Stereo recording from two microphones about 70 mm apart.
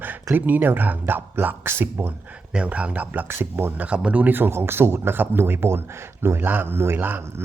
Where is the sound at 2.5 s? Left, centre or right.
Centre.